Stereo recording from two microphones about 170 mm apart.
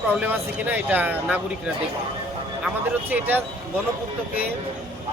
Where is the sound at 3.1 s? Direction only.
10° right (ahead or behind).